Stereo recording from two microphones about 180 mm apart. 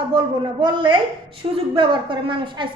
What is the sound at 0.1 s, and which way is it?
A woman's voice, 25° right (ahead or behind).